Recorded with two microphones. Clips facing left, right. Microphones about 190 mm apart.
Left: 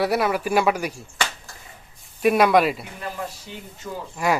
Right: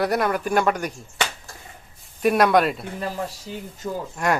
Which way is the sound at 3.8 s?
30° right (ahead or behind).